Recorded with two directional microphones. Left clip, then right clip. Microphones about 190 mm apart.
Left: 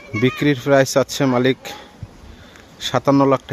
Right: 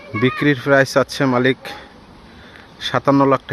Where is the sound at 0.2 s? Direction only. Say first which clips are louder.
Right 1 dB; 20° left (ahead or behind).